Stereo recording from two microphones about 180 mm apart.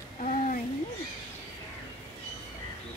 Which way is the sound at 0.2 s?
40° left (ahead or behind).